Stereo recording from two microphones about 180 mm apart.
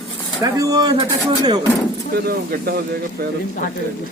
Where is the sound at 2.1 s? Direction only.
60° right (ahead or behind).